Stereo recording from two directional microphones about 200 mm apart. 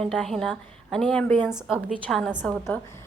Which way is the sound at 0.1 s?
5° left (ahead or behind).